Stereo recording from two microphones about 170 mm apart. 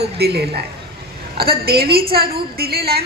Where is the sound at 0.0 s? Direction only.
70° right (ahead or behind).